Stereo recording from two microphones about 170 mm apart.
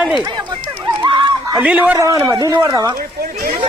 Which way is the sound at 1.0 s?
25° right (ahead or behind).